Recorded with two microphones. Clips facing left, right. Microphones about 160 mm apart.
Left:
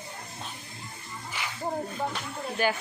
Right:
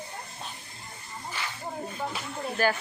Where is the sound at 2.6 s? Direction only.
15° left (ahead or behind).